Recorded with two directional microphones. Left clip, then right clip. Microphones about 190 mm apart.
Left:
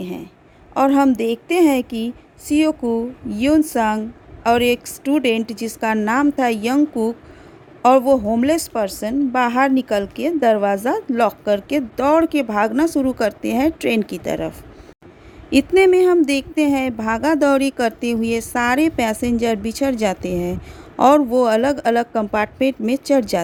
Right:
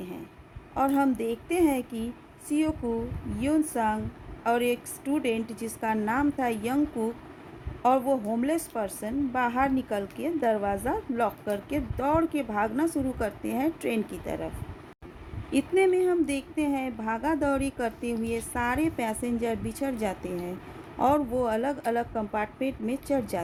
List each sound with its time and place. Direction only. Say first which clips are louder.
0.0 s a sound: left 10 dB; 55° left (ahead or behind)
0.7 s a woman's voice: left 10 dB; 50° left (ahead or behind)
15.5 s a woman's voice: left 11 dB; 55° left (ahead or behind)